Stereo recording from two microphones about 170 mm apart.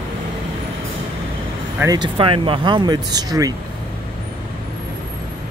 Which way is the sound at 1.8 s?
25° right (ahead or behind).